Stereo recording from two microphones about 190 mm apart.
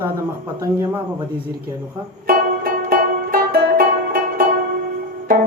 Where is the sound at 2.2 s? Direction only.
50° right (ahead or behind).